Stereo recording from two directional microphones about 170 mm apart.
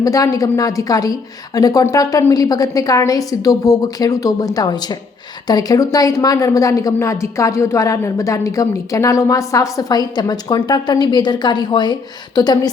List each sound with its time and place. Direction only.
0.0 s speech: 20° left (ahead or behind)